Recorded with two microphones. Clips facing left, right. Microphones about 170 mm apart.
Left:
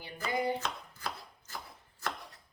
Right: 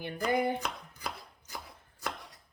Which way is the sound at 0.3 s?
55° right (ahead or behind).